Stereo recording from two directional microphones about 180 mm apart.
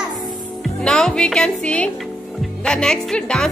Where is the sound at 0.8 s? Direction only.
5° left (ahead or behind).